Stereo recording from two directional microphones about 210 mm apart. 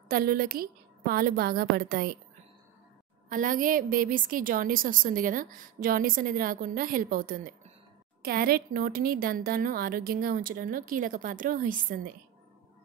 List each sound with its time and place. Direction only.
0.1 s speech: 45° right (ahead or behind)
3.3 s a woman's voice: 40° right (ahead or behind)